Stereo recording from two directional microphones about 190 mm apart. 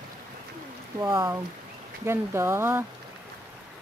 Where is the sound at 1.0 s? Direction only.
15° right (ahead or behind).